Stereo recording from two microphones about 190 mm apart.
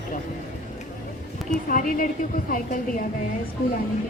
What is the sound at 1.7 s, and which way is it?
A woman's voice, 45° left (ahead or behind).